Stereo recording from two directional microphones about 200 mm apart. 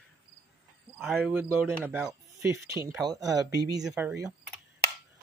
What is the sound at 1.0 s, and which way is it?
Speech, centre (ahead or behind).